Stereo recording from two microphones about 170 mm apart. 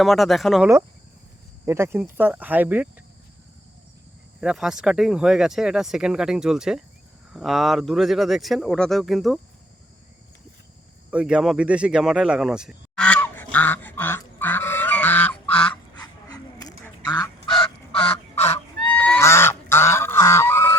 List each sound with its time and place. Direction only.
0.0 s speech: centre (ahead or behind)
1.6 s speech: 15° right (ahead or behind)
4.4 s speech: 5° right (ahead or behind)
11.1 s speech: 5° right (ahead or behind)
13.1 s goose: 10° left (ahead or behind)
16.0 s a sound: 20° left (ahead or behind)
17.0 s goose: 20° left (ahead or behind)
18.9 s goose: 5° left (ahead or behind)